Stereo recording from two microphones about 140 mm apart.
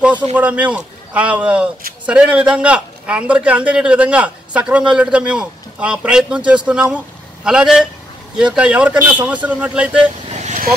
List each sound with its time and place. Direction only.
0.4 s a man's voice: 10° right (ahead or behind)
10.3 s vehicle: 55° right (ahead or behind)